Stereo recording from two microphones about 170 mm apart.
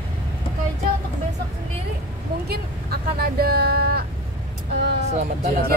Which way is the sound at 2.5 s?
65° right (ahead or behind).